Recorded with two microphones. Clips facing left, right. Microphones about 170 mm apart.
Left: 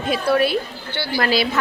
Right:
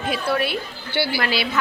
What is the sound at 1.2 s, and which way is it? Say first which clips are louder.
Speech: left 4 dB; 40° left (ahead or behind).